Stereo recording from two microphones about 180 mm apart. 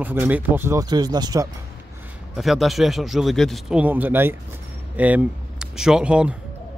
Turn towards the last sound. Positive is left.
turn(degrees=-5)  # may be behind; listen again after turning